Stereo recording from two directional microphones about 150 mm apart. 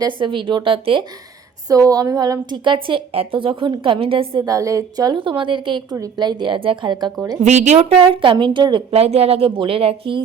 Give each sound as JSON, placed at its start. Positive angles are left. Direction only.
{"t": 0.0, "sound": "a woman's voice", "side_deg": -30}
{"t": 1.6, "sound": "a woman's voice", "side_deg": -25}
{"t": 4.4, "sound": "a woman's voice", "side_deg": -20}
{"t": 7.4, "sound": "a woman's voice", "side_deg": -50}
{"t": 8.9, "sound": "a woman's voice", "side_deg": -45}